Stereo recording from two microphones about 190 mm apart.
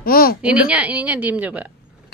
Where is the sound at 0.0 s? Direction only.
50° left (ahead or behind).